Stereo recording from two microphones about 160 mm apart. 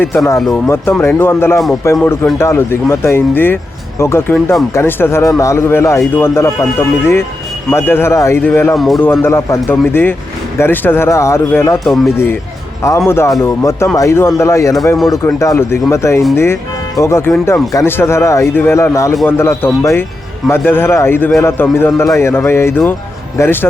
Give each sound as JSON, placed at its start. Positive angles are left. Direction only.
{"t": 0.3, "sound": "speech", "side_deg": 0}
{"t": 0.7, "sound": "a man's voice", "side_deg": 15}
{"t": 2.4, "sound": "a man's voice", "side_deg": 15}
{"t": 8.7, "sound": "speech", "side_deg": 0}
{"t": 9.2, "sound": "a man's voice", "side_deg": 15}